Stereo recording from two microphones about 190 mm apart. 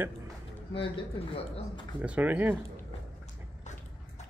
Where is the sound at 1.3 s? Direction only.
30° left (ahead or behind).